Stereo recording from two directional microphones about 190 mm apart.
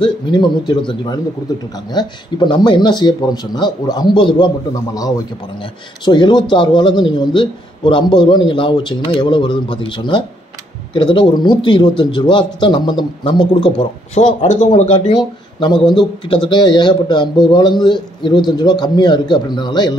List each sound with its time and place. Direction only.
0.0 s a man's voice: 25° left (ahead or behind)
5.6 s a man's voice: 25° left (ahead or behind)
14.4 s speech: 40° left (ahead or behind)
15.1 s a man's voice: 25° left (ahead or behind)